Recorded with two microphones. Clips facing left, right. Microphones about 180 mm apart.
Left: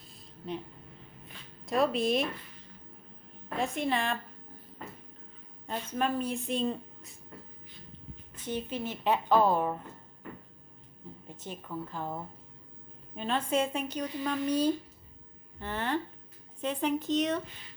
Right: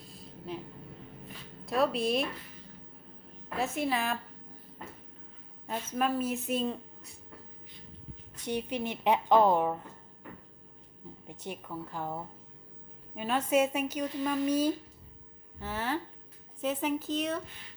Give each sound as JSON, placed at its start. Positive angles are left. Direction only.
{"t": 0.1, "sound": "a sound", "side_deg": 0}
{"t": 1.6, "sound": "speech", "side_deg": 0}
{"t": 3.5, "sound": "speech", "side_deg": -5}
{"t": 5.6, "sound": "speech", "side_deg": -5}
{"t": 8.4, "sound": "a woman's voice", "side_deg": -15}
{"t": 11.3, "sound": "a woman's voice", "side_deg": -15}